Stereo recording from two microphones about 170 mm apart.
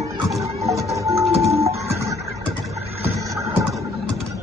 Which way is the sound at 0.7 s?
20° right (ahead or behind).